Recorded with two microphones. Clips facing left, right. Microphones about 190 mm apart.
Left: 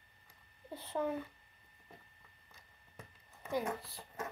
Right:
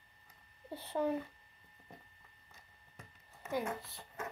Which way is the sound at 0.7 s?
10° right (ahead or behind).